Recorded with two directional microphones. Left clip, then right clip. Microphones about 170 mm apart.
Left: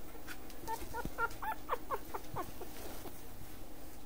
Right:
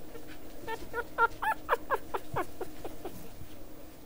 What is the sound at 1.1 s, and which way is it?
Dog, 30° right (ahead or behind).